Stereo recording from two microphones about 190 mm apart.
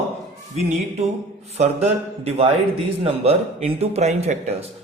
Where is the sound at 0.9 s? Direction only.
35° right (ahead or behind).